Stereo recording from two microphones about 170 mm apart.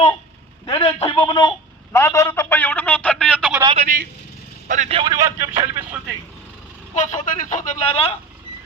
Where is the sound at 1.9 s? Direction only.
15° left (ahead or behind).